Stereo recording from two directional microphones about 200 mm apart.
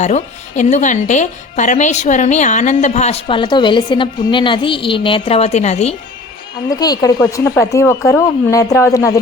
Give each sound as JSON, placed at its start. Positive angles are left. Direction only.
{"t": 0.0, "sound": "a woman's voice", "side_deg": 35}
{"t": 6.7, "sound": "a woman's voice", "side_deg": 20}